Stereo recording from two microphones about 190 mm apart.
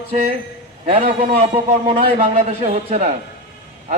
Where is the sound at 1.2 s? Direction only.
30° right (ahead or behind).